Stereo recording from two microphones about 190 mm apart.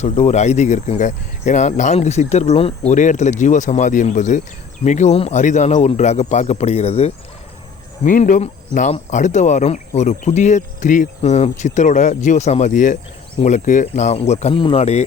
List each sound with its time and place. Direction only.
0.0 s speech: 35° left (ahead or behind)